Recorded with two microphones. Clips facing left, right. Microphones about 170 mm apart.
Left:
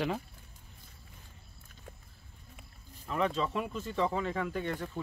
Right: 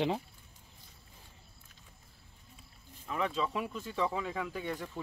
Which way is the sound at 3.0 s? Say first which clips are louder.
Left 2 dB; centre (ahead or behind).